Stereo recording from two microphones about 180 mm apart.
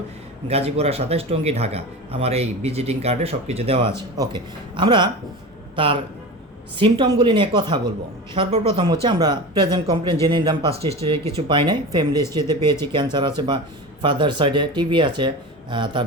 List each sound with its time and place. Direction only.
0.4 s a man's voice: 35° right (ahead or behind)